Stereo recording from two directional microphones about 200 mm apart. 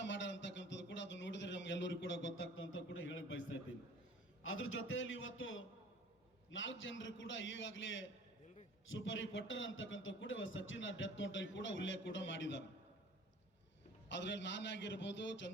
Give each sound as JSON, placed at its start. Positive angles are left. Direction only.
{"t": 0.0, "sound": "a sound", "side_deg": 65}
{"t": 4.4, "sound": "a man's voice", "side_deg": 75}
{"t": 14.1, "sound": "a man's voice", "side_deg": 60}